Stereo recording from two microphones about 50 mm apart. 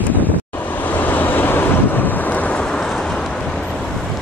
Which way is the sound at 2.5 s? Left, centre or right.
Centre.